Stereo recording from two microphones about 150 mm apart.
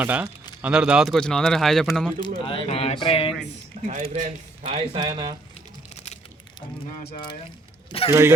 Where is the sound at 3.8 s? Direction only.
50° right (ahead or behind).